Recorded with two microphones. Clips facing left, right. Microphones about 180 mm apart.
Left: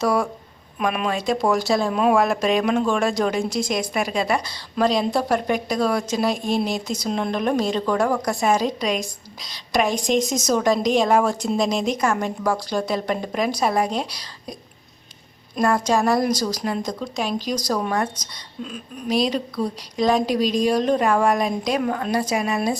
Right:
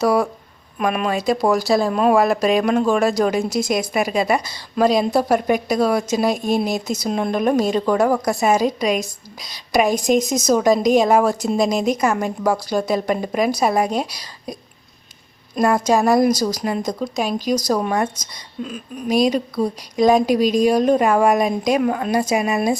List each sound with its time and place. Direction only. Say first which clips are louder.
0.0 s a woman's voice: right 4 dB; 5° right (ahead or behind)
6.7 s speech: right 3 dB; 40° right (ahead or behind)
7.1 s a woman's voice: right 4 dB; 10° right (ahead or behind)
15.5 s a woman's voice: right 3 dB; 10° right (ahead or behind)
17.3 s speech: right 5 dB; 45° right (ahead or behind)
17.8 s a woman's voice: right 3 dB; 5° right (ahead or behind)
19.1 s a woman's voice: right 4 dB; 15° right (ahead or behind)